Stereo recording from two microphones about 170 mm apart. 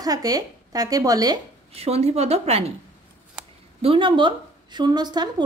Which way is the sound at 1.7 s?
35° right (ahead or behind).